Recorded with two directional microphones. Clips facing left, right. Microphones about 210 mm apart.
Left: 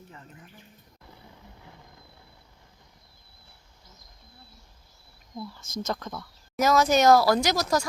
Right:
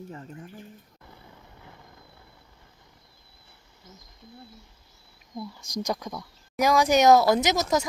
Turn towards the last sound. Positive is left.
turn(degrees=-20)  # may be behind; listen again after turning